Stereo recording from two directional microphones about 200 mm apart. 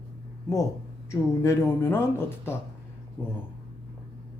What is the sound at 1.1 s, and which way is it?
Speech, 15° left (ahead or behind).